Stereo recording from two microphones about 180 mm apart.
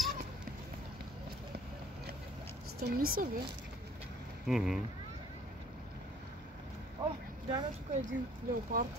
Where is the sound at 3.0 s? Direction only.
55° right (ahead or behind).